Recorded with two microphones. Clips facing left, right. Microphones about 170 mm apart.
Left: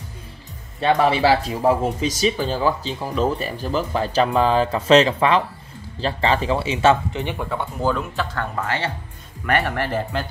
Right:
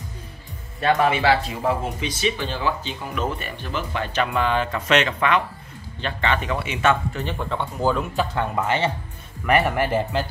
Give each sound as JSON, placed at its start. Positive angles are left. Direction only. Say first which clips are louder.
{"t": 0.7, "sound": "speech", "louder": "left 2 dB", "side_deg": 25}
{"t": 1.2, "sound": "speech", "louder": "left 3 dB", "side_deg": 35}
{"t": 7.2, "sound": "speech", "louder": "left 1 dB", "side_deg": 10}
{"t": 8.2, "sound": "speech", "louder": "right 2 dB", "side_deg": -15}
{"t": 9.7, "sound": "speech", "louder": "right 2 dB", "side_deg": -10}